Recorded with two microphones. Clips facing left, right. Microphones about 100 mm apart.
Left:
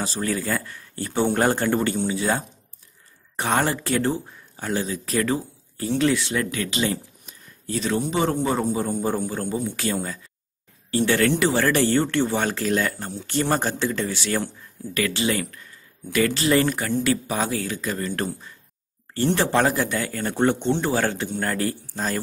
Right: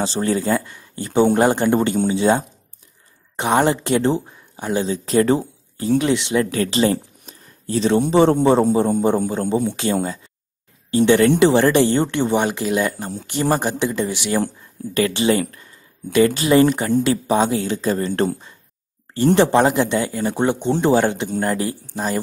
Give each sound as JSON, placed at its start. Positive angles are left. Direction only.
{"t": 0.0, "sound": "speech", "side_deg": -30}
{"t": 6.5, "sound": "a man's voice", "side_deg": -35}
{"t": 11.1, "sound": "speech", "side_deg": -20}